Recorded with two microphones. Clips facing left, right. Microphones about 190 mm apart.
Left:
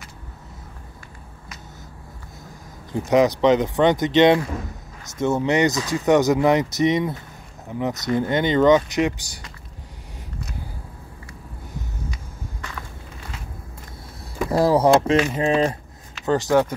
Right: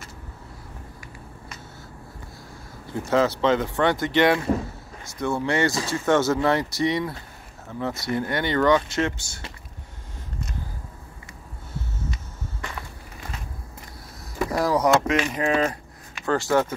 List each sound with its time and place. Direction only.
2.9 s speech: 15° left (ahead or behind)
14.5 s speech: 30° left (ahead or behind)